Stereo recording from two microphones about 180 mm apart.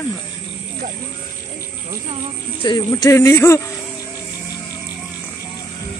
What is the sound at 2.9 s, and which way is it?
Speech, 15° left (ahead or behind).